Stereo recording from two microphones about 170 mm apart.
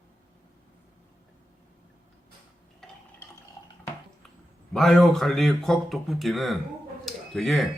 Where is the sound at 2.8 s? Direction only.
5° left (ahead or behind).